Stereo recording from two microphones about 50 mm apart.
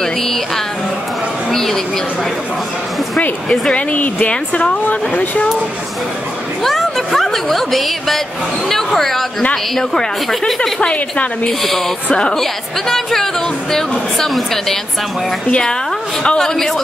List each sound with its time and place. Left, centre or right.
0.0 s music: centre
1.5 s a sound: centre
3.7 s speech: left
4.8 s speech: left
6.6 s a woman's voice: centre
12.4 s a woman's voice: centre
16.2 s a woman's voice: centre